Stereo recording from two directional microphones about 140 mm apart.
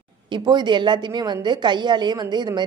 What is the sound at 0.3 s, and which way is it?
A woman's voice, 30° right (ahead or behind).